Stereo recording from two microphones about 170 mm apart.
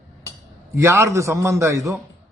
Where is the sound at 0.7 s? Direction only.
15° right (ahead or behind).